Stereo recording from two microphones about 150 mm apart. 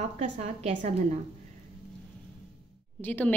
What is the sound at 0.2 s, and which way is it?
Speech, 50° right (ahead or behind).